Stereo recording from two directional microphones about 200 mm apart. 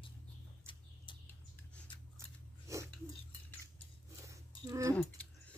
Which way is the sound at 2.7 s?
15° right (ahead or behind).